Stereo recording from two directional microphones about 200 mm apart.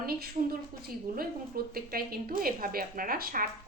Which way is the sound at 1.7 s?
50° right (ahead or behind).